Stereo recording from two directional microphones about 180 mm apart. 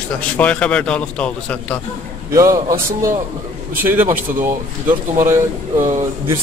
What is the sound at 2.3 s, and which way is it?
Speech, 15° right (ahead or behind).